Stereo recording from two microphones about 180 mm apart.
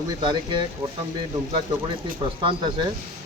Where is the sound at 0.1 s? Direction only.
25° right (ahead or behind).